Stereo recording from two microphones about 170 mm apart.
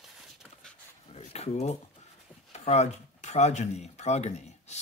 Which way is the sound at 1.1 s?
40° left (ahead or behind).